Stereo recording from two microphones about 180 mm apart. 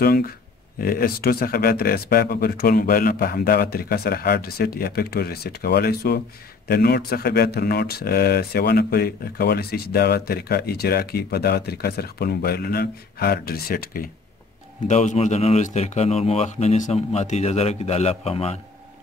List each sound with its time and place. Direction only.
0.0 s speech: 55° left (ahead or behind)
14.9 s a man's voice: 40° left (ahead or behind)